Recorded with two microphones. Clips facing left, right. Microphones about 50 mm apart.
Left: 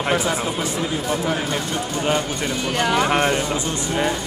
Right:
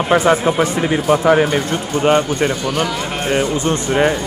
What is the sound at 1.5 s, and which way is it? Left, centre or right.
Speech, right.